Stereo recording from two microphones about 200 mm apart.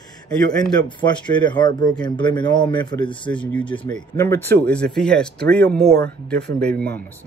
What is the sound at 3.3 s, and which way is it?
A man's voice, 5° left (ahead or behind).